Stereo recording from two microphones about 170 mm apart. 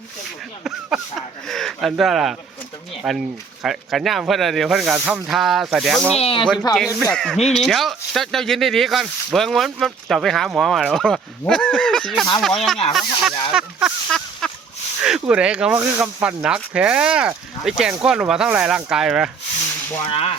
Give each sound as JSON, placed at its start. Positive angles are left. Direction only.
{"t": 1.5, "sound": "a sound", "side_deg": 0}
{"t": 3.0, "sound": "speech", "side_deg": 0}
{"t": 6.1, "sound": "speech", "side_deg": 35}
{"t": 6.7, "sound": "speech", "side_deg": 0}
{"t": 13.5, "sound": "a sound", "side_deg": -5}
{"t": 15.0, "sound": "speech", "side_deg": -5}
{"t": 20.1, "sound": "speech", "side_deg": 35}